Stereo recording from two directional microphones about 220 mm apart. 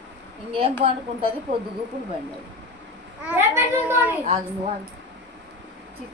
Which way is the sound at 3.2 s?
10° right (ahead or behind).